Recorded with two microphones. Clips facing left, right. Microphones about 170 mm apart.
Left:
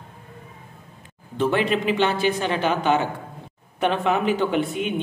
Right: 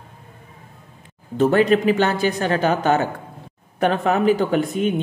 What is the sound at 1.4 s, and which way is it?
Speech, 40° right (ahead or behind).